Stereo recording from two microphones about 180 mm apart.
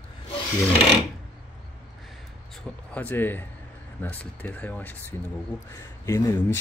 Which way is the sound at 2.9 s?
10° left (ahead or behind).